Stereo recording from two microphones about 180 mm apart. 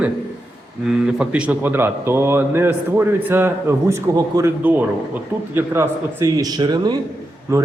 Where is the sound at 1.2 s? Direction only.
5° right (ahead or behind).